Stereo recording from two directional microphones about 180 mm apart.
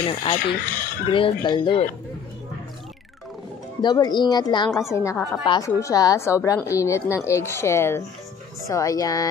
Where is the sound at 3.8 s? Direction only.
20° left (ahead or behind).